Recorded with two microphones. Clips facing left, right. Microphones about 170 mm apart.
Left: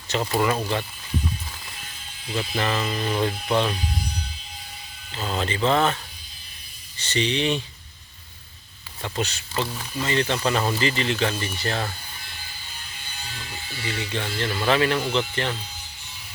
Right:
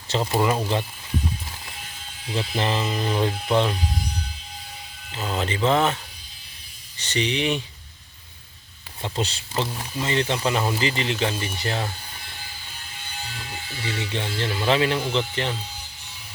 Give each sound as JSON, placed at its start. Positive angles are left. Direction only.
{"t": 0.2, "sound": "speech", "side_deg": -20}
{"t": 2.3, "sound": "speech", "side_deg": -25}
{"t": 5.1, "sound": "speech", "side_deg": -15}
{"t": 7.0, "sound": "speech", "side_deg": -15}
{"t": 9.0, "sound": "speech", "side_deg": -25}
{"t": 14.1, "sound": "speech", "side_deg": -20}